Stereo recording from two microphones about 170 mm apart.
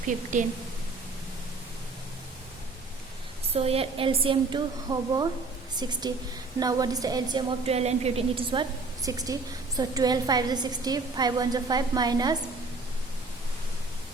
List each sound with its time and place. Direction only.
0.0 s a woman's voice: 50° right (ahead or behind)
3.5 s a woman's voice: 35° right (ahead or behind)
7.7 s a woman's voice: 40° right (ahead or behind)
9.0 s a woman's voice: 20° right (ahead or behind)